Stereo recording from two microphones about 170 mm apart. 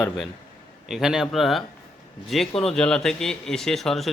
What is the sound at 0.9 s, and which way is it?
Speech, centre (ahead or behind).